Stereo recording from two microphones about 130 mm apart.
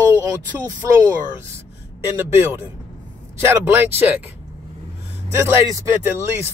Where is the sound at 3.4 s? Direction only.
20° right (ahead or behind).